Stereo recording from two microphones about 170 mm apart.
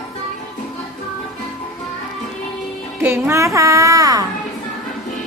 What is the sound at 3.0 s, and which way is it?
Speech, 15° right (ahead or behind).